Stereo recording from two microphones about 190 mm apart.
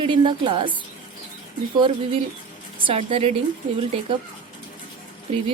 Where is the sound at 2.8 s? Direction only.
30° right (ahead or behind).